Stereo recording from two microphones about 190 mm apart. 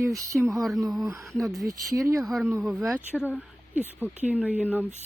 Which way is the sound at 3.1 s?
10° left (ahead or behind).